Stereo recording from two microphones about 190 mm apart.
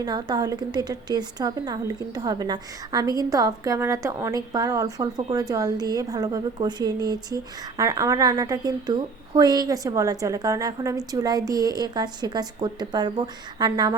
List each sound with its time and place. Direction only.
0.0 s a woman's voice: 20° right (ahead or behind)